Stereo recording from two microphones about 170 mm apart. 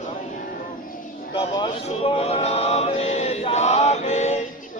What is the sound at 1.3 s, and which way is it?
Male singing, 30° left (ahead or behind).